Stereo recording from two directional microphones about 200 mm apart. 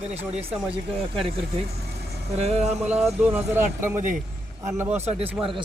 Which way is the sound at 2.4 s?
30° right (ahead or behind).